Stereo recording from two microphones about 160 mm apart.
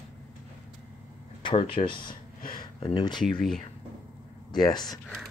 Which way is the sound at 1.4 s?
30° left (ahead or behind).